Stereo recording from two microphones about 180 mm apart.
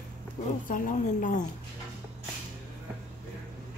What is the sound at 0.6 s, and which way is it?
Speech, 45° left (ahead or behind).